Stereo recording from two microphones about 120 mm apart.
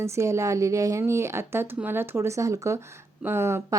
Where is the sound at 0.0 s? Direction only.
25° right (ahead or behind).